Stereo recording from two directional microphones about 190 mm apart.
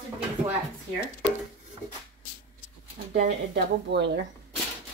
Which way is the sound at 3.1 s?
60° right (ahead or behind).